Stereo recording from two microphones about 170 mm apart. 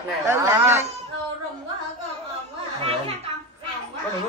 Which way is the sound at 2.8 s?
35° right (ahead or behind).